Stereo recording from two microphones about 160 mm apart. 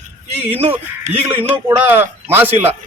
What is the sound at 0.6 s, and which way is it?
Speech, 35° right (ahead or behind).